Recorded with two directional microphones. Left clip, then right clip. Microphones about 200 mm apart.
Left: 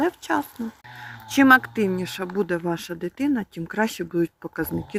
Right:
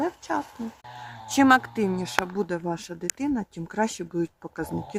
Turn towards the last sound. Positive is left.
turn(degrees=10)  # may be behind; listen again after turning